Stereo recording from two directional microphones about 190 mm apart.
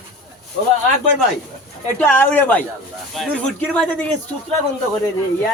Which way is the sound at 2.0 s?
10° left (ahead or behind).